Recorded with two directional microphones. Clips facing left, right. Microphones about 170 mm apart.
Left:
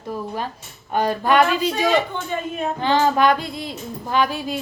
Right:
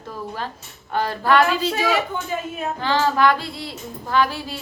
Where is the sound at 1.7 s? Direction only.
5° right (ahead or behind).